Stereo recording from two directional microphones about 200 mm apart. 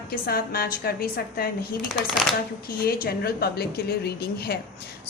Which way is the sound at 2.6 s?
50° left (ahead or behind).